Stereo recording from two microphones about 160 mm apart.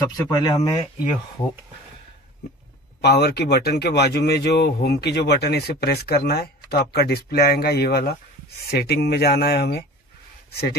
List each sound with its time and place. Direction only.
0.3 s speech: 25° left (ahead or behind)
3.0 s speech: 90° left